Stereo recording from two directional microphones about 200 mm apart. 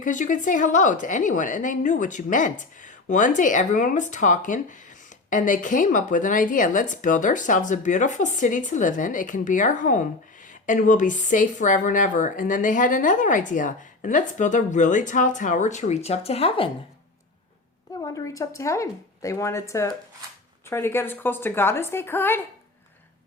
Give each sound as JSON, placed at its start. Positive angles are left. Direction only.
{"t": 0.0, "sound": "a woman's voice", "side_deg": 40}
{"t": 18.0, "sound": "speech", "side_deg": 15}